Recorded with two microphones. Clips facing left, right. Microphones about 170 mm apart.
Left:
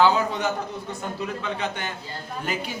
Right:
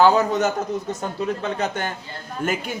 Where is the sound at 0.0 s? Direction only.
45° right (ahead or behind).